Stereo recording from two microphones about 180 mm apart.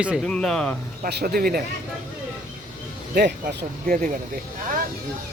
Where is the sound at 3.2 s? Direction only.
55° right (ahead or behind).